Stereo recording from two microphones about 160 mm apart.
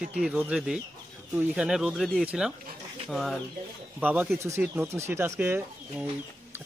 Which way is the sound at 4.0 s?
10° right (ahead or behind).